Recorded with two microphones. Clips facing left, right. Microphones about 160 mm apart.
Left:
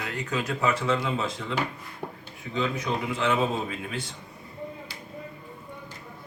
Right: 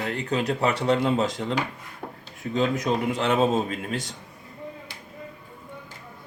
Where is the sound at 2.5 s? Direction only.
40° right (ahead or behind).